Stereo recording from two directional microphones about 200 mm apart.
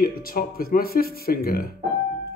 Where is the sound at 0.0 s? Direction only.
45° left (ahead or behind).